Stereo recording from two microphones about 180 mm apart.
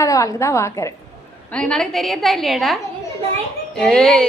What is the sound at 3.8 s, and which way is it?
Speech, 5° left (ahead or behind).